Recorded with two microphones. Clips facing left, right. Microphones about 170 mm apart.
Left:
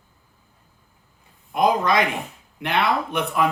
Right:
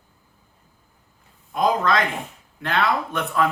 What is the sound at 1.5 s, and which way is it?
Speech, 15° left (ahead or behind).